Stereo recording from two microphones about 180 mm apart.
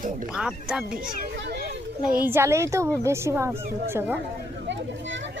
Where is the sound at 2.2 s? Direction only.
15° right (ahead or behind).